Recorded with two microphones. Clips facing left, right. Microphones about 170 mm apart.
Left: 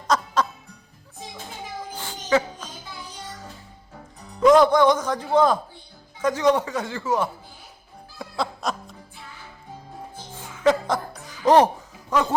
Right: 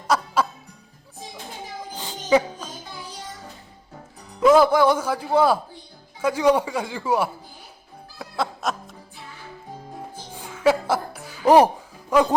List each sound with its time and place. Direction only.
0.1 s music: 10° right (ahead or behind)
2.0 s a sound: 15° right (ahead or behind)
4.4 s speech: 5° right (ahead or behind)
8.2 s music: centre (ahead or behind)
10.3 s music: 10° right (ahead or behind)
12.1 s speech: 10° right (ahead or behind)